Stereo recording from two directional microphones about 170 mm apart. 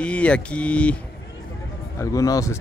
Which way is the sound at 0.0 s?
5° left (ahead or behind).